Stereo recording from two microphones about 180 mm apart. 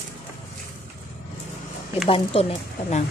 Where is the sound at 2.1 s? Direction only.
35° left (ahead or behind).